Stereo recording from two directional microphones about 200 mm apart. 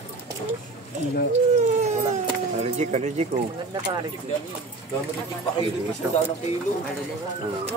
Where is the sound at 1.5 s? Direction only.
35° right (ahead or behind).